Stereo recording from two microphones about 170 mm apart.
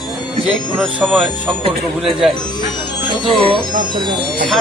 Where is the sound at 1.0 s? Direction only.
10° right (ahead or behind).